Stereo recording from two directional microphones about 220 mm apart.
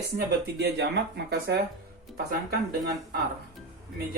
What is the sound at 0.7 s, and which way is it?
Speech, 50° right (ahead or behind).